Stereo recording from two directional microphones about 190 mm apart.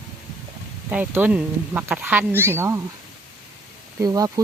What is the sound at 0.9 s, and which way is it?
Speech, 10° right (ahead or behind).